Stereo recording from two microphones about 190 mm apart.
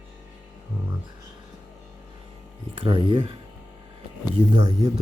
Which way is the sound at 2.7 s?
25° right (ahead or behind).